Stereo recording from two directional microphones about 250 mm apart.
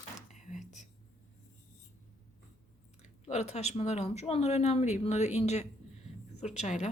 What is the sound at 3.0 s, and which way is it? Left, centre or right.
Speech, left.